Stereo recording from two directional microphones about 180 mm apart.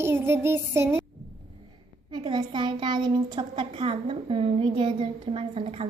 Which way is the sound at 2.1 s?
25° right (ahead or behind).